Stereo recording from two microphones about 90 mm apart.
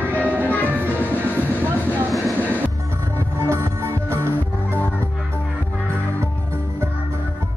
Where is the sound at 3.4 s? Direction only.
30° right (ahead or behind).